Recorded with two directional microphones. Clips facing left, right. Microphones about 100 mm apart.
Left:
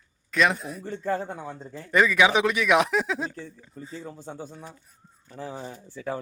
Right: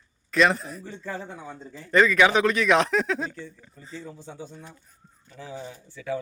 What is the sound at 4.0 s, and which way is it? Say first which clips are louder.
Speech: even; 50° left (ahead or behind).